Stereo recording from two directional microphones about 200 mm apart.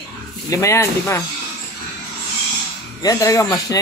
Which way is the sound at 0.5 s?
15° left (ahead or behind).